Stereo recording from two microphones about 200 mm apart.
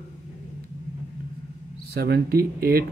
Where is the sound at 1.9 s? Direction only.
50° right (ahead or behind).